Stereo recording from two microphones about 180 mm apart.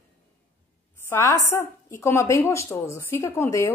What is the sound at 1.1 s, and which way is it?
A woman's voice, 15° left (ahead or behind).